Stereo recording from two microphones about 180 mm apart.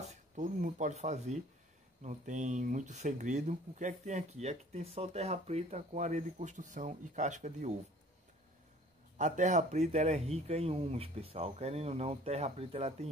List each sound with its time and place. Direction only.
0.0 s speech: 40° right (ahead or behind)
9.2 s speech: 40° right (ahead or behind)